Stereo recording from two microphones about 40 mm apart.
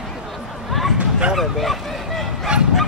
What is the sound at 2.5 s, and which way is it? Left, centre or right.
Bow-wow, right.